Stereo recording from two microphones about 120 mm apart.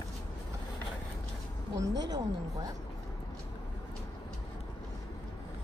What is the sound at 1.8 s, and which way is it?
Speech, 35° right (ahead or behind).